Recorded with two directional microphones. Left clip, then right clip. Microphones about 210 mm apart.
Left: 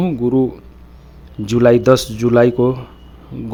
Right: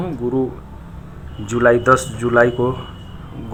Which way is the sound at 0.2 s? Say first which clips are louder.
Left 4 dB; 30° left (ahead or behind).